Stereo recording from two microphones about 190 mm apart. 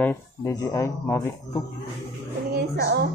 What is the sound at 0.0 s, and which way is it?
Speech, 15° left (ahead or behind).